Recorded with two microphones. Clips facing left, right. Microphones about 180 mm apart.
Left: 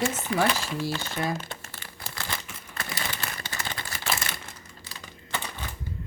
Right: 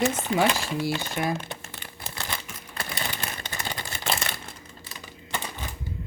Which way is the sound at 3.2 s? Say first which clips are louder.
Right 1 dB; 20° right (ahead or behind).